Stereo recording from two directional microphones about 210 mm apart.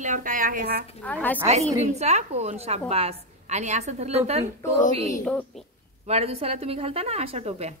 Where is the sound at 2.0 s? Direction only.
30° right (ahead or behind).